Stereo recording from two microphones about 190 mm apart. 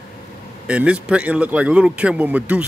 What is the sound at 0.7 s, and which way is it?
A man's voice, 5° right (ahead or behind).